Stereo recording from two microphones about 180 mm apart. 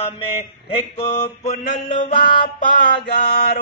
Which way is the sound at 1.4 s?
45° left (ahead or behind).